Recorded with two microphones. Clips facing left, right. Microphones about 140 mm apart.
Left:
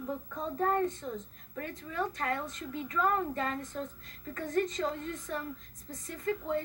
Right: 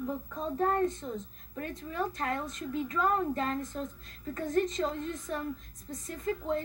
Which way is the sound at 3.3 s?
20° right (ahead or behind).